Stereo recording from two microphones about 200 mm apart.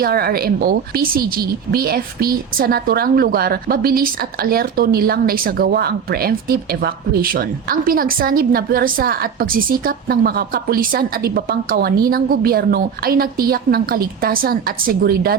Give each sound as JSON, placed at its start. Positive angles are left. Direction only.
{"t": 0.0, "sound": "speech", "side_deg": -50}